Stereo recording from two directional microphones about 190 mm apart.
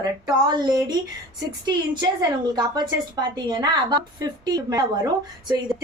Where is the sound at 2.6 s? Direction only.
20° right (ahead or behind).